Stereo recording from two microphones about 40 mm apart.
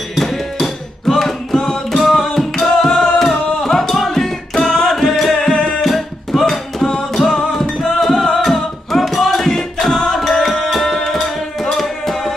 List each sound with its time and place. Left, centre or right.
0.1 s music: centre
5.5 s music: left
5.8 s music: centre